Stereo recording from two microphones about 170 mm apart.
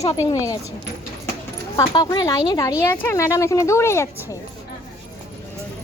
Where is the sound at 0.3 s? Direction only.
20° left (ahead or behind).